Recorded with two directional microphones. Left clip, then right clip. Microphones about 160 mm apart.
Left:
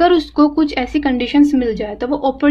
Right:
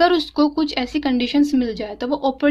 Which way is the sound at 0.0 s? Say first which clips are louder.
Left 4 dB; 30° right (ahead or behind).